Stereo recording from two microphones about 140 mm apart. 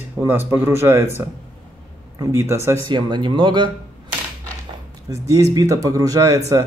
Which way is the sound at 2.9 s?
35° right (ahead or behind).